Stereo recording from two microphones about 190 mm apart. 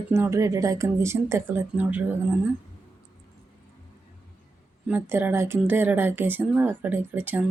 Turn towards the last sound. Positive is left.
turn(degrees=-10)  # may be behind; listen again after turning